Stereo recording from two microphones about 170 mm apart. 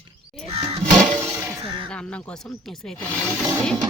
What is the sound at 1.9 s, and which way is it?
Speech, 5° left (ahead or behind).